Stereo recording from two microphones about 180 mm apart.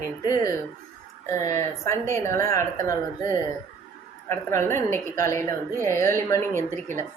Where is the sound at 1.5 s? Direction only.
15° left (ahead or behind).